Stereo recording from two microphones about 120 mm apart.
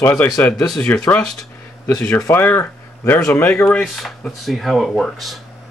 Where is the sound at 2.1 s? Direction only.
20° left (ahead or behind); by 5.4 s centre (ahead or behind).